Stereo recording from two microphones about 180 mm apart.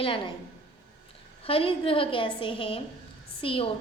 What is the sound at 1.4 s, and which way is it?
A woman's voice, 30° left (ahead or behind).